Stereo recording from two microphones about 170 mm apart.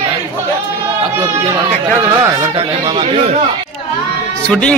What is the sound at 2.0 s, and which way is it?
A man's voice, 15° right (ahead or behind).